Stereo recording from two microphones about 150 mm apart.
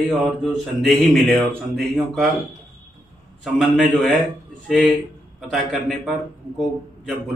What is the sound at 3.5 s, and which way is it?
A man's voice, centre (ahead or behind).